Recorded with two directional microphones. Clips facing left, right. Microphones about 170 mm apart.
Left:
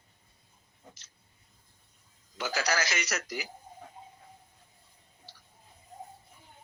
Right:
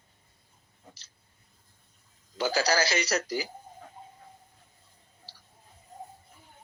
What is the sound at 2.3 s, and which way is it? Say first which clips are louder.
A man's voice: right 5 dB; 30° right (ahead or behind).